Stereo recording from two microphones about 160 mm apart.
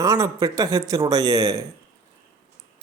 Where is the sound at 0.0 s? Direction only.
20° right (ahead or behind).